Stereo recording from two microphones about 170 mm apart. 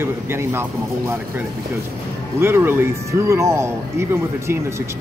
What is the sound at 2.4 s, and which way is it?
Speech, 15° right (ahead or behind).